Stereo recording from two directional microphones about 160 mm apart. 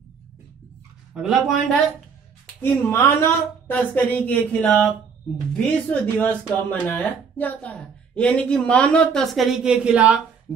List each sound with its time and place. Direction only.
1.1 s a woman's voice: 5° right (ahead or behind)
2.4 s a woman's voice: 10° left (ahead or behind); by 10.2 s 5° right (ahead or behind)